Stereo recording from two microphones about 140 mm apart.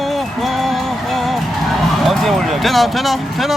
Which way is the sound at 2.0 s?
Centre (ahead or behind).